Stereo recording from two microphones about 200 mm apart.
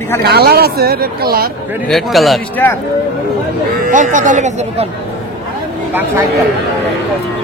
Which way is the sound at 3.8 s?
40° right (ahead or behind).